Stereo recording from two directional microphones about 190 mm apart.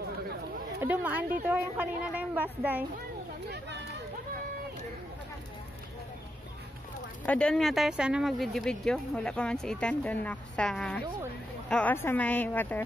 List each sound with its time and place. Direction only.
0.8 s a woman's voice: 10° right (ahead or behind)
3.4 s a sound: 65° right (ahead or behind)
7.2 s a woman's voice: 5° left (ahead or behind)